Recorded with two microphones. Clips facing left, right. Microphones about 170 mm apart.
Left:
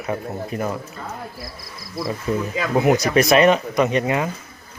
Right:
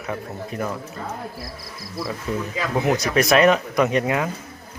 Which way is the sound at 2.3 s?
5° left (ahead or behind).